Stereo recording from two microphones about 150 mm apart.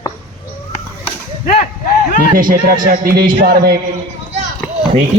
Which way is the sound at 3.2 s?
85° right.